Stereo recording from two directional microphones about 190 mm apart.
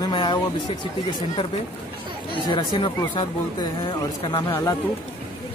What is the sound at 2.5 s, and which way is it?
Speech, 25° left (ahead or behind).